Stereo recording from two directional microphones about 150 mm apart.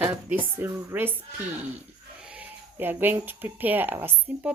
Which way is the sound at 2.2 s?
10° right (ahead or behind).